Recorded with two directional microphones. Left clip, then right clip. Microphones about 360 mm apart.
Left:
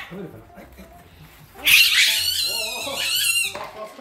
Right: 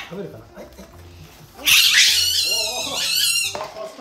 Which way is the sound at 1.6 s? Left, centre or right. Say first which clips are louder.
Left 1 dB; centre.